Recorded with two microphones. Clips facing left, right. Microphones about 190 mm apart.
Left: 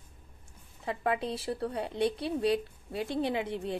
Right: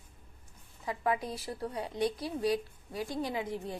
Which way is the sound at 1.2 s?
25° left (ahead or behind).